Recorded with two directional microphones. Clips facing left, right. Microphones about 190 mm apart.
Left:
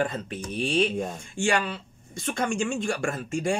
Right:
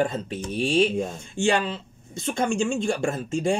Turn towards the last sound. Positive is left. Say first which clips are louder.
# right 3 dB
turn(degrees=-25)  # may be behind; listen again after turning